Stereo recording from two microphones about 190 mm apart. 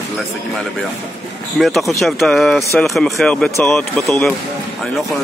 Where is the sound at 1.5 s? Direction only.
Centre (ahead or behind).